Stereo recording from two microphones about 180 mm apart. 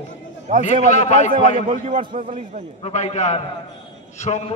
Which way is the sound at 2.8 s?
40° left (ahead or behind).